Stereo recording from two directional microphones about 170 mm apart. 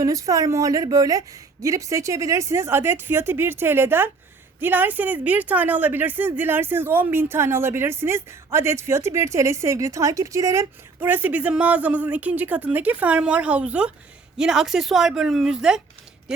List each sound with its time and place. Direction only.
0.0 s a woman's voice: 20° right (ahead or behind); by 15.8 s 5° right (ahead or behind)